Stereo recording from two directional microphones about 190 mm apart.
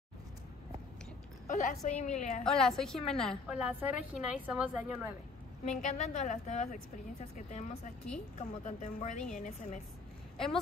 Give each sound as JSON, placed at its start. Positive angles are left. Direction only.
{"t": 1.5, "sound": "a woman's voice", "side_deg": 40}
{"t": 2.4, "sound": "a woman's voice", "side_deg": 0}
{"t": 5.8, "sound": "a woman's voice", "side_deg": 40}
{"t": 10.3, "sound": "speech", "side_deg": 0}